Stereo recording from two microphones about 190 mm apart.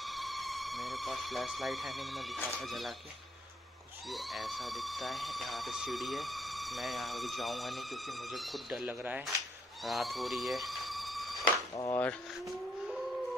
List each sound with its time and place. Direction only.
0.0 s speech: centre (ahead or behind)
4.1 s speech: centre (ahead or behind)
11.7 s speech: 20° left (ahead or behind)